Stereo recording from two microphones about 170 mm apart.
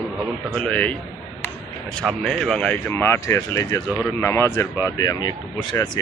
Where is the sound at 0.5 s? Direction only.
5° left (ahead or behind).